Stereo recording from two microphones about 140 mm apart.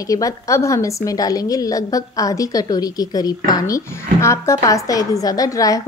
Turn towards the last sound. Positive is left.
turn(degrees=25)  # may be behind; listen again after turning